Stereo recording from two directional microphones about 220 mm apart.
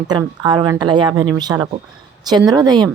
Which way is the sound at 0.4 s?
20° right (ahead or behind).